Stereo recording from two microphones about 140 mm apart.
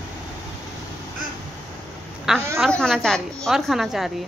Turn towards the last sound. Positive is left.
turn(degrees=0)  # may be behind; listen again after turning